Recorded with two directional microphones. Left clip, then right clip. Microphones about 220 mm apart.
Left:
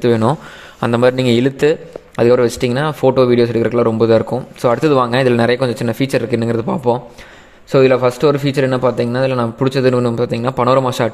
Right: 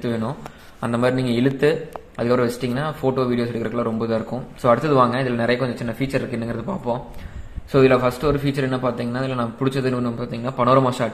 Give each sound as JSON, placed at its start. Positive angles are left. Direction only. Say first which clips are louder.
{"t": 0.0, "sound": "a man's voice", "louder": "left 12 dB", "side_deg": 45}